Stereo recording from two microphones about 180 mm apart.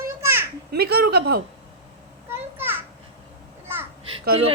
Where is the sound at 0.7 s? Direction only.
60° right (ahead or behind).